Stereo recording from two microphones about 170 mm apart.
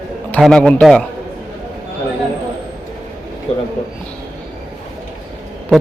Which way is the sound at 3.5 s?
35° left (ahead or behind).